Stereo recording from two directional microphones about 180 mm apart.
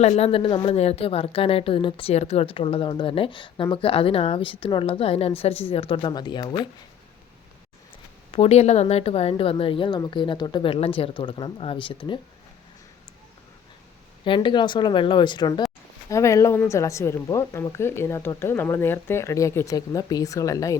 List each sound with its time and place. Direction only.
0.0 s a woman's voice: 35° left (ahead or behind)
8.3 s speech: 35° left (ahead or behind)
14.3 s speech: 25° left (ahead or behind)